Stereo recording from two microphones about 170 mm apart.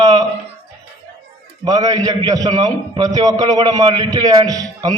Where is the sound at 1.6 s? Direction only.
20° right (ahead or behind).